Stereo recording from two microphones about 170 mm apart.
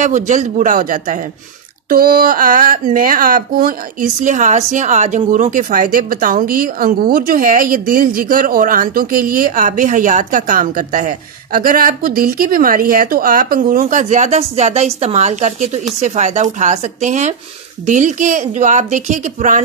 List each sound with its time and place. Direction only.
0.0 s speech: 45° right (ahead or behind)